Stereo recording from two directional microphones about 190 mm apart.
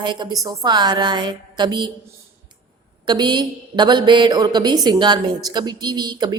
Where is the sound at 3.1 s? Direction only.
25° right (ahead or behind).